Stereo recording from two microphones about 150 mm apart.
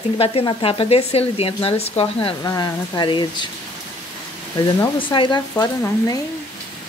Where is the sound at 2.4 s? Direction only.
25° left (ahead or behind).